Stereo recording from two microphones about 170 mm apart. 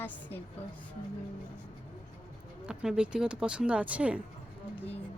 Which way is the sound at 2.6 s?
5° right (ahead or behind).